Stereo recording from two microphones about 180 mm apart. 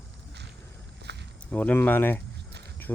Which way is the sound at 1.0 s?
70° right (ahead or behind).